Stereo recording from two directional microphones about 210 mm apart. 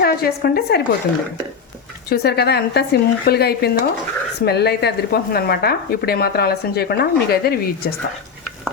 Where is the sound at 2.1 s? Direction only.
50° left (ahead or behind).